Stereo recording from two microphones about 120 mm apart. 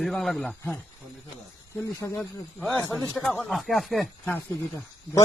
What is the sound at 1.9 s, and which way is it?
Speech, 25° left (ahead or behind).